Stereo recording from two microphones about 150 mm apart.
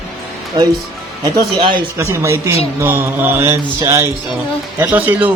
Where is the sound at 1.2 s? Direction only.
30° right (ahead or behind).